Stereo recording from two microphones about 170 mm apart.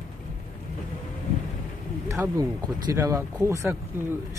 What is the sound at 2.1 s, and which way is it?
Speech, 15° right (ahead or behind).